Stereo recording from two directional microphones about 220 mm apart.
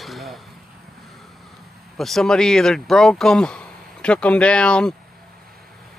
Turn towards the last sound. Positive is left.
turn(degrees=5)  # may be behind; listen again after turning